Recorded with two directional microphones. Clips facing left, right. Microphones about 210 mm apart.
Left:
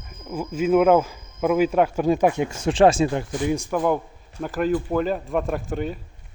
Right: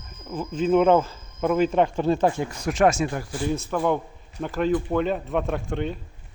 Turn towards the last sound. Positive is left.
turn(degrees=5)  # may be behind; listen again after turning